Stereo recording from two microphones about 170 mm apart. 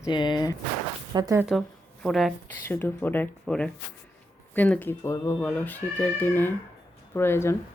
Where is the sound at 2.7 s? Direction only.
10° left (ahead or behind).